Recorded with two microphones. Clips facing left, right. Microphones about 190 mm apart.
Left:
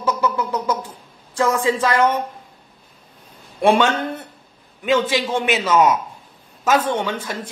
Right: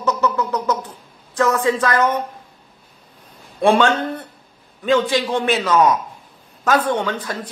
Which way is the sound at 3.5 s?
15° left (ahead or behind).